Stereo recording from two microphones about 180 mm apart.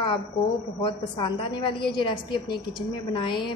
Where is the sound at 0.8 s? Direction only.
25° left (ahead or behind).